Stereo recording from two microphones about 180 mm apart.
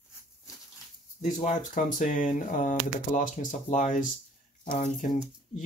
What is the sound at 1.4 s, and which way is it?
Speech, 45° left (ahead or behind).